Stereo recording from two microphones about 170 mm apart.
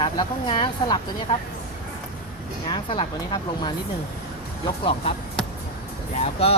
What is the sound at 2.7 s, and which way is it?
Speech, 25° left (ahead or behind).